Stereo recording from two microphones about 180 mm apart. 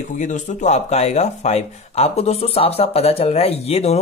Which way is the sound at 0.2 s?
40° left (ahead or behind).